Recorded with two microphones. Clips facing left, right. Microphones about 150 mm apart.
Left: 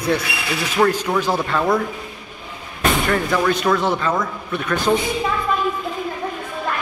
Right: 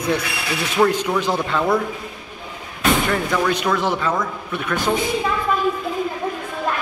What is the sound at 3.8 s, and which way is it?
Speech, 10° right (ahead or behind).